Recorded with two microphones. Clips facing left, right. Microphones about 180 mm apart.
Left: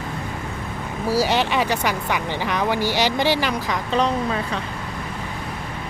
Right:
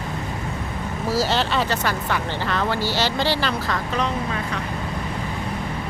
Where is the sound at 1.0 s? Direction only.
15° left (ahead or behind).